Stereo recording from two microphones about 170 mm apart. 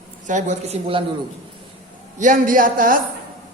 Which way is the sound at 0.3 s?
45° right (ahead or behind).